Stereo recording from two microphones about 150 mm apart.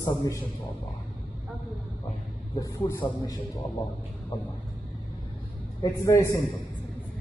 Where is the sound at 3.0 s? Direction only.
15° left (ahead or behind).